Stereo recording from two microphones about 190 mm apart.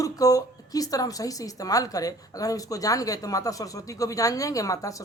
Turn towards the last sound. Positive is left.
turn(degrees=15)  # may be behind; listen again after turning